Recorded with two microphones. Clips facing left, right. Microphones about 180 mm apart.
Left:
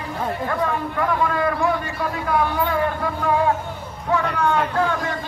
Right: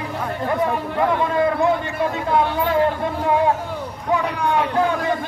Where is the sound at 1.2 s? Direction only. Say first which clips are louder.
Right 2 dB; 25° right (ahead or behind).